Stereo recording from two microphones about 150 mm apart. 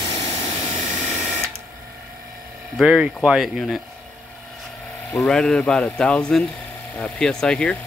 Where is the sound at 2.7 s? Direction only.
5° right (ahead or behind).